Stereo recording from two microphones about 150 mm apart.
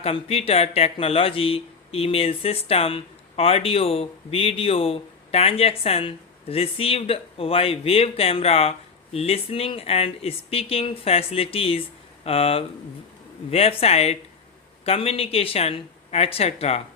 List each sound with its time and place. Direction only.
0.0 s speech: 40° left (ahead or behind)